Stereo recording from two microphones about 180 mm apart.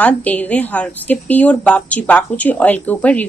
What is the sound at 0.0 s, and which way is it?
A woman's voice, 10° left (ahead or behind).